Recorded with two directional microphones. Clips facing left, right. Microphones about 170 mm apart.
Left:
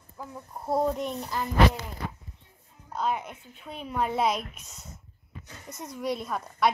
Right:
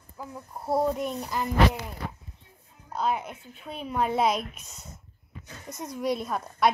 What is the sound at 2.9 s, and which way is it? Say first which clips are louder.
A woman's voice: right 1 dB; 5° right (ahead or behind).